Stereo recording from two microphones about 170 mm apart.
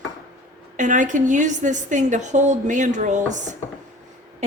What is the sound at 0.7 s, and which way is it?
A woman's voice, 50° right (ahead or behind).